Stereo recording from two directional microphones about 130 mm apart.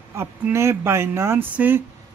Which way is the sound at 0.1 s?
20° right (ahead or behind).